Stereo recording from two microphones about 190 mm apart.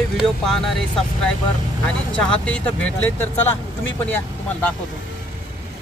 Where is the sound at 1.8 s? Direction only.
5° left (ahead or behind).